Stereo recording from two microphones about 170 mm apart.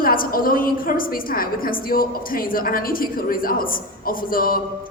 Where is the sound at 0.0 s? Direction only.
55° left (ahead or behind).